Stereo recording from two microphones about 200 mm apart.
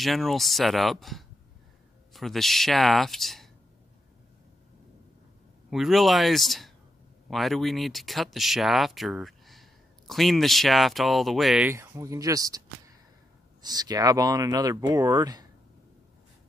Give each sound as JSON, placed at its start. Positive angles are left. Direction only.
{"t": 0.0, "sound": "speech", "side_deg": 0}
{"t": 5.7, "sound": "speech", "side_deg": 0}
{"t": 11.7, "sound": "speech", "side_deg": -15}